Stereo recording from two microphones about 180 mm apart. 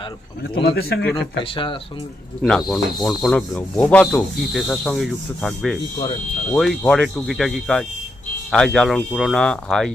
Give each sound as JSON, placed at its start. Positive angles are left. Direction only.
{"t": 0.6, "sound": "a man's voice", "side_deg": 60}
{"t": 1.1, "sound": "speech", "side_deg": 30}
{"t": 2.4, "sound": "speech", "side_deg": 0}